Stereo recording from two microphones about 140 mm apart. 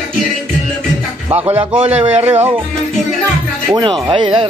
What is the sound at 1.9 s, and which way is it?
Speech, 15° right (ahead or behind).